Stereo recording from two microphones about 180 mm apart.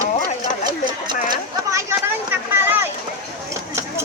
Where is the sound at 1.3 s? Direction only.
15° right (ahead or behind).